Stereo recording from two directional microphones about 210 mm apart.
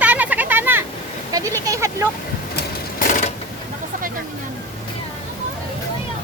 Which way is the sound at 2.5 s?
40° left (ahead or behind).